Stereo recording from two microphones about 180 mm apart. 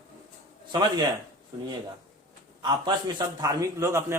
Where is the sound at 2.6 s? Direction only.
25° right (ahead or behind).